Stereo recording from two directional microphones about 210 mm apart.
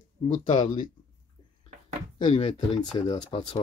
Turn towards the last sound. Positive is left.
turn(degrees=20)  # may be behind; listen again after turning